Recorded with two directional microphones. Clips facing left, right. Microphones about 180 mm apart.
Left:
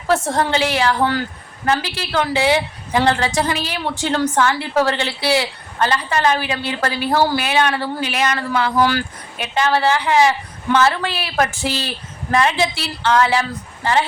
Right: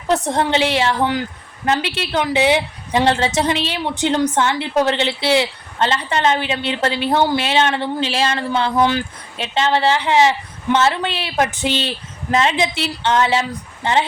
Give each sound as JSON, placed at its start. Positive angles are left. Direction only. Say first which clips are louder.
{"t": 0.1, "sound": "a woman's voice", "louder": "even", "side_deg": -20}